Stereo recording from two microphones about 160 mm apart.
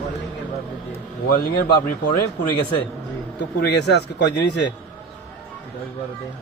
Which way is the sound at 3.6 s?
90° left.